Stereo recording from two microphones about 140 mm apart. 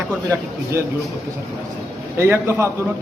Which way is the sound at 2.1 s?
15° right (ahead or behind).